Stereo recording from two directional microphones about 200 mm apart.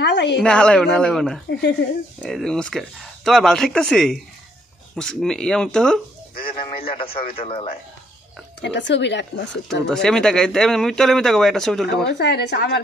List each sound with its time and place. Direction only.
0.0 s speech: 60° left (ahead or behind)
0.4 s speech: 5° left (ahead or behind)
6.4 s a man's voice: 25° left (ahead or behind)
8.5 s speech: 60° left (ahead or behind)
10.0 s speech: 5° left (ahead or behind)
12.1 s speech: 55° left (ahead or behind)